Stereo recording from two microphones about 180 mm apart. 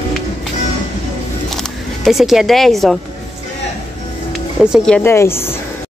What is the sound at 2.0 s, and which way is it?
Speech, centre (ahead or behind).